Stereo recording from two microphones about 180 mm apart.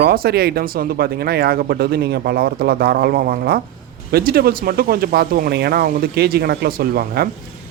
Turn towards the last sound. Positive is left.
turn(degrees=-55)  # may be behind; listen again after turning